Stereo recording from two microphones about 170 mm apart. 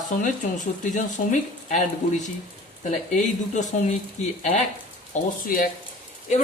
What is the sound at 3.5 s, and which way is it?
Speech, 45° left (ahead or behind).